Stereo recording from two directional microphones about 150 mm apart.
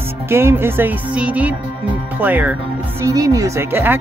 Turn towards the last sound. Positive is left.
turn(degrees=-15)  # may be behind; listen again after turning